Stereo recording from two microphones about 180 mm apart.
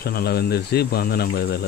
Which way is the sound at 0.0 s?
60° left (ahead or behind).